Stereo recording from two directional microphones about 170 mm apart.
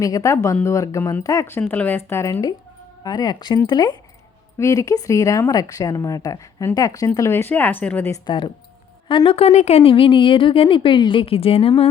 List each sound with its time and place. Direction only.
0.0 s speech: 20° left (ahead or behind)
8.3 s a woman's voice: 30° left (ahead or behind)